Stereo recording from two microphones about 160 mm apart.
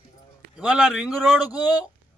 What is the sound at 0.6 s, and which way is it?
Speech, 5° right (ahead or behind).